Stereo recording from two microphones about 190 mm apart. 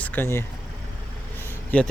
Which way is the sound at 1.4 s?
10° left (ahead or behind).